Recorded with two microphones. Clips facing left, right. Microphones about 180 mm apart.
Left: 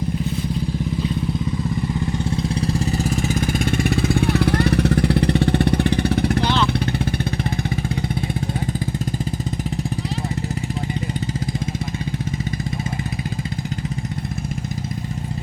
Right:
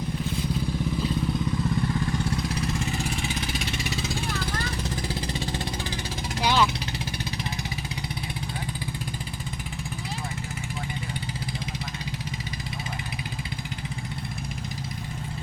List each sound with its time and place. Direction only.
2.2 s vehicle: 25° left (ahead or behind); by 6.4 s 65° left (ahead or behind)
6.4 s vehicle: 10° right (ahead or behind)